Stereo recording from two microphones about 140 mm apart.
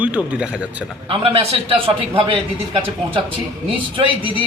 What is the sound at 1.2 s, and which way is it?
A man's voice, 40° right (ahead or behind).